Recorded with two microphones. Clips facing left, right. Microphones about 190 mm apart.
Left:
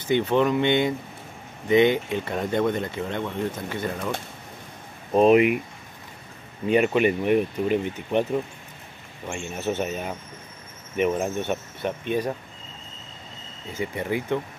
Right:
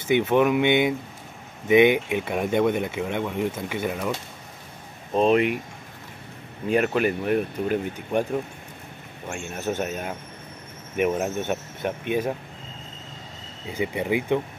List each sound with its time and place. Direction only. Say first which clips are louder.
0.1 s speech: right 1 dB; 10° right (ahead or behind)
5.1 s speech: left 3 dB; 5° left (ahead or behind)
6.7 s speech: left 2 dB; centre (ahead or behind)
9.7 s speech: even; centre (ahead or behind)
13.7 s speech: right 3 dB; 15° right (ahead or behind)